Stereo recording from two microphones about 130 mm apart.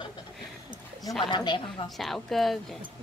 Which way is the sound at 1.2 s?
35° left (ahead or behind).